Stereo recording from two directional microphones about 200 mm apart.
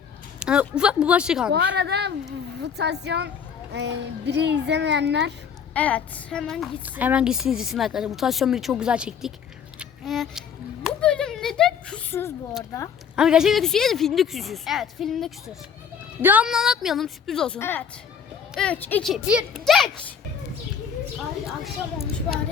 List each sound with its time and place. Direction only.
0.3 s a woman's voice: 5° right (ahead or behind)
1.5 s a child's voice: 60° right (ahead or behind)
5.7 s a woman's voice: 5° left (ahead or behind)
9.7 s music: centre (ahead or behind)
10.8 s a sound: 5° left (ahead or behind)
13.1 s a woman's voice: 5° right (ahead or behind)
21.4 s a woman's voice: centre (ahead or behind)